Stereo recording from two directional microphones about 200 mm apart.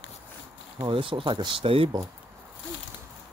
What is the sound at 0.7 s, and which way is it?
Speech, 25° right (ahead or behind).